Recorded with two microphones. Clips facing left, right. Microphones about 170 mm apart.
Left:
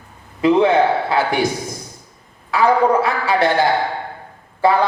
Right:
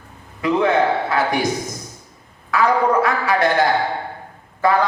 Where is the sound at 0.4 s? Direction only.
30° left (ahead or behind).